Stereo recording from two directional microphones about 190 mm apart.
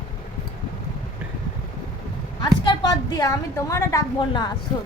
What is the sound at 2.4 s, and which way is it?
A woman's voice, 20° left (ahead or behind).